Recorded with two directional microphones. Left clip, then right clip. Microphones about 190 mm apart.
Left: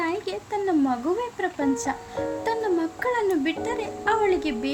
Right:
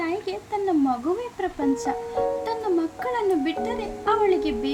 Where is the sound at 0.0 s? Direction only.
20° left (ahead or behind).